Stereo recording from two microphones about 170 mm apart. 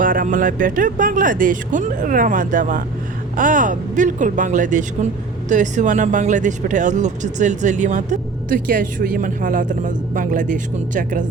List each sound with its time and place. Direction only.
0.0 s speech: 55° right (ahead or behind)